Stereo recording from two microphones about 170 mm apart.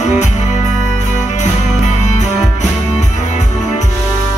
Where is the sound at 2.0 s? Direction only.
45° left (ahead or behind).